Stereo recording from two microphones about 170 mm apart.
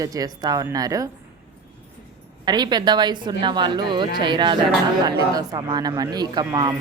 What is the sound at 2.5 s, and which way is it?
A woman's voice, 25° right (ahead or behind).